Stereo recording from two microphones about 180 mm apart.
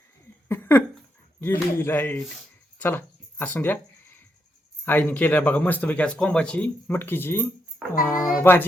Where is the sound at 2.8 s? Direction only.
10° left (ahead or behind).